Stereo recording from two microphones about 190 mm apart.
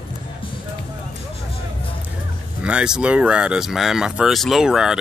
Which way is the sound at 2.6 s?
5° right (ahead or behind).